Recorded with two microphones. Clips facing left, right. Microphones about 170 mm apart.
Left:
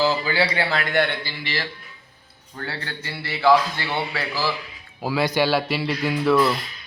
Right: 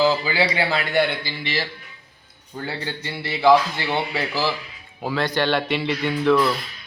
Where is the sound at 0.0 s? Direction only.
15° right (ahead or behind).